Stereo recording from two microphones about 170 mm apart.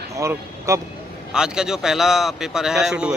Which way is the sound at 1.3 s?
5° right (ahead or behind).